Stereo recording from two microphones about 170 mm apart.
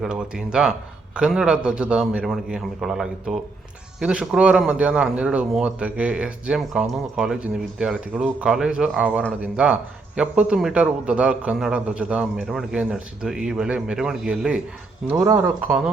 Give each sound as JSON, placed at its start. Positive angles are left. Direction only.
{"t": 0.0, "sound": "a man's voice", "side_deg": -5}
{"t": 15.2, "sound": "a man's voice", "side_deg": -15}